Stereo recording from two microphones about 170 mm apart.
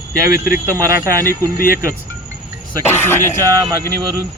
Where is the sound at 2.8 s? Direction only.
15° left (ahead or behind).